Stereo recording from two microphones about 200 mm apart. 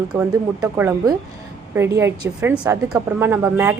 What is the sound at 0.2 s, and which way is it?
A woman's voice, 10° right (ahead or behind).